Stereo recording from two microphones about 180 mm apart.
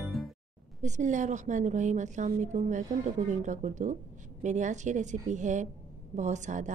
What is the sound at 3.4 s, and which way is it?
A woman's voice, 40° right (ahead or behind).